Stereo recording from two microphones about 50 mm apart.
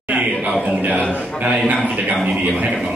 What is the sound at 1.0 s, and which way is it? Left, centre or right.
Speech, left.